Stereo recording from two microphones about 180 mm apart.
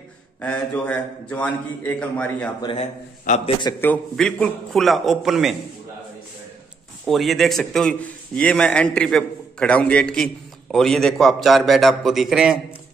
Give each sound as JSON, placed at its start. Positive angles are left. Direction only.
{"t": 0.4, "sound": "a man's voice", "side_deg": 10}
{"t": 2.6, "sound": "a man's voice", "side_deg": 30}
{"t": 3.8, "sound": "a man's voice", "side_deg": 5}
{"t": 7.1, "sound": "a man's voice", "side_deg": 0}